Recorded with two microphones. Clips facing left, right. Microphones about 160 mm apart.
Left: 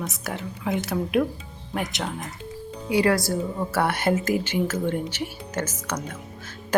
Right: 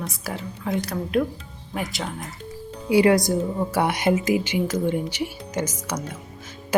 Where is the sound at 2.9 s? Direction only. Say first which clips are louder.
Right 4 dB; 25° right (ahead or behind).